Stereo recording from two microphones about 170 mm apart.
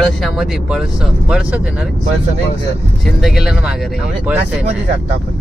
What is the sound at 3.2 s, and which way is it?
Speech, 5° right (ahead or behind).